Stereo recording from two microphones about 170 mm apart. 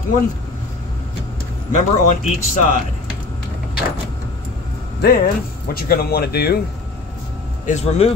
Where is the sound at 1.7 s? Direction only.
45° left (ahead or behind).